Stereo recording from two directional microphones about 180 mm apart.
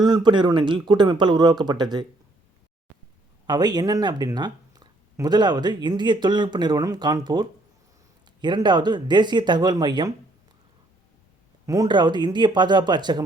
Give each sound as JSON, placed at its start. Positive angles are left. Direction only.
{"t": 0.0, "sound": "speech", "side_deg": -25}
{"t": 3.4, "sound": "speech", "side_deg": -25}
{"t": 11.6, "sound": "speech", "side_deg": -20}